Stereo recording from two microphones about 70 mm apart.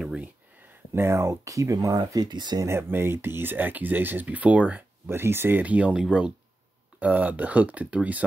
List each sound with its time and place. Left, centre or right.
0.9 s speech: right
2.9 s speech: right
5.0 s speech: right
5.6 s speech: centre